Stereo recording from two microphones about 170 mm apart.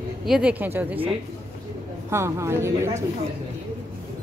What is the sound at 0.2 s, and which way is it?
Speech, 5° right (ahead or behind).